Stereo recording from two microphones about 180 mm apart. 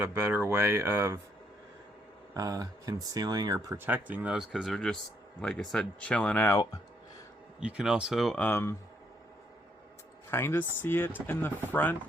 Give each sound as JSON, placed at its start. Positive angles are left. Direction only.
{"t": 0.0, "sound": "speech", "side_deg": -15}
{"t": 2.3, "sound": "speech", "side_deg": -20}
{"t": 7.6, "sound": "speech", "side_deg": -5}
{"t": 8.4, "sound": "speech", "side_deg": 15}
{"t": 10.3, "sound": "speech", "side_deg": 10}